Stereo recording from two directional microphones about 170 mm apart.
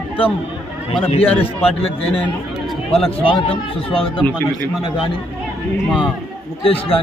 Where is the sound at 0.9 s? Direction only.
30° left (ahead or behind).